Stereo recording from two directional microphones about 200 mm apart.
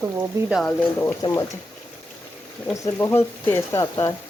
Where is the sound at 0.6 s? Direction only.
10° left (ahead or behind).